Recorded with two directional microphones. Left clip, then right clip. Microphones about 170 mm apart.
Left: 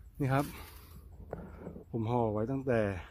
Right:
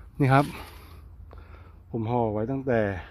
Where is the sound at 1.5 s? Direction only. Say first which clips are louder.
Right 10 dB; 15° left (ahead or behind).